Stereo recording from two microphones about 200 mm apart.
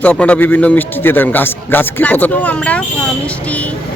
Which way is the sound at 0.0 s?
10° left (ahead or behind).